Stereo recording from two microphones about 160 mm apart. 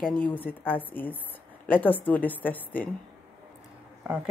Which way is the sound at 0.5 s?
10° left (ahead or behind).